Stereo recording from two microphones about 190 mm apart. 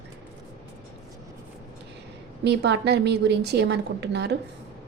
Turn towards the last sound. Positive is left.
turn(degrees=-60)  # may be behind; listen again after turning